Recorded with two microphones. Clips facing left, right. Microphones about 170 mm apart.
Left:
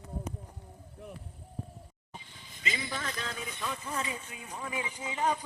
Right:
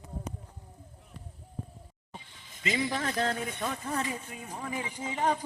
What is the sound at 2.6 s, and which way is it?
Speech, 55° right (ahead or behind).